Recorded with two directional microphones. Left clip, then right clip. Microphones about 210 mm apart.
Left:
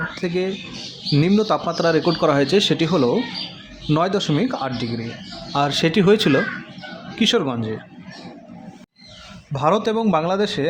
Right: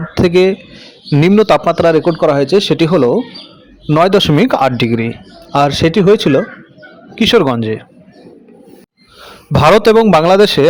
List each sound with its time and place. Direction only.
0.1 s speech: 40° right (ahead or behind)
5.5 s speech: 30° right (ahead or behind)
9.5 s a man's voice: 45° right (ahead or behind)